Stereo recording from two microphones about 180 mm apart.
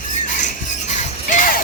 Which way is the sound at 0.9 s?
45° left (ahead or behind).